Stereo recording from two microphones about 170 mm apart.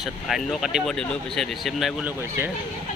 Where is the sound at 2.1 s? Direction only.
15° right (ahead or behind).